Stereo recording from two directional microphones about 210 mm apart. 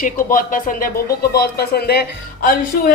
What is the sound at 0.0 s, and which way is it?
A woman's voice, 40° left (ahead or behind).